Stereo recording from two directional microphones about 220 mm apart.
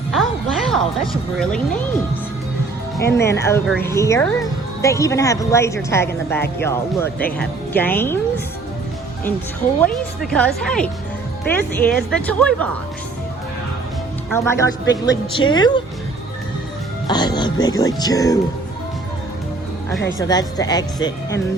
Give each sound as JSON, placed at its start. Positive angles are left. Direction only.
{"t": 0.1, "sound": "music", "side_deg": 0}
{"t": 3.0, "sound": "speech", "side_deg": 10}
{"t": 9.8, "sound": "speech", "side_deg": 5}
{"t": 14.3, "sound": "speech", "side_deg": 10}
{"t": 17.1, "sound": "speech", "side_deg": 20}
{"t": 20.1, "sound": "speech", "side_deg": 15}